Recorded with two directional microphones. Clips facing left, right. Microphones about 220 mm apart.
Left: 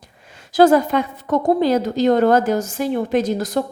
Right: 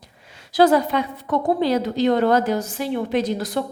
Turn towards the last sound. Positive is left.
turn(degrees=45)  # may be behind; listen again after turning